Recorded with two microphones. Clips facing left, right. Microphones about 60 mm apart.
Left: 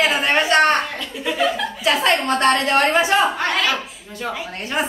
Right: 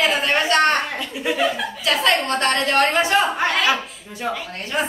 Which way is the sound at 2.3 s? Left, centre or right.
Left.